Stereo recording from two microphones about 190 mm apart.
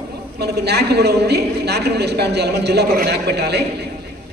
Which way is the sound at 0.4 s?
60° right (ahead or behind).